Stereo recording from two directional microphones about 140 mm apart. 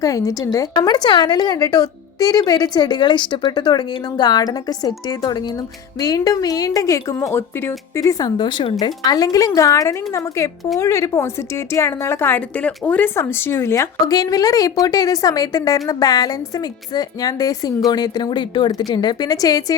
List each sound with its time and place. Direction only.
0.0 s a woman's voice: 25° left (ahead or behind)